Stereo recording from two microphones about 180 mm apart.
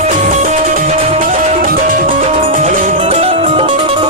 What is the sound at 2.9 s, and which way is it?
Music, 35° right (ahead or behind).